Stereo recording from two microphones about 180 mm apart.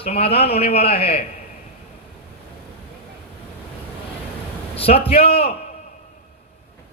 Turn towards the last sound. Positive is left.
turn(degrees=35)  # may be behind; listen again after turning